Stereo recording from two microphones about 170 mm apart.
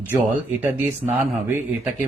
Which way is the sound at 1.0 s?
5° right (ahead or behind).